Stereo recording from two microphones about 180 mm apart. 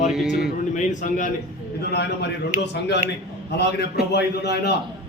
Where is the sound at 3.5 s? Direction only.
70° left (ahead or behind).